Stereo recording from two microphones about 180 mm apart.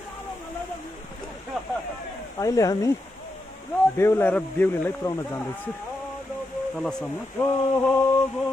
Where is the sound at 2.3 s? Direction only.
20° left (ahead or behind).